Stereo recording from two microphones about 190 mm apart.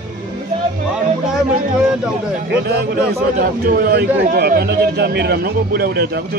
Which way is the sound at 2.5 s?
60° right (ahead or behind).